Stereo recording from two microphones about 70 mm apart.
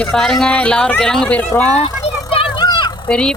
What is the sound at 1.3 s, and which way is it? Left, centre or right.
Speech, left.